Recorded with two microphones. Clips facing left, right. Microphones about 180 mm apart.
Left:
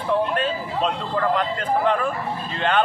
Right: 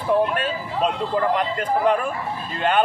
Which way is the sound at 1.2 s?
10° right (ahead or behind).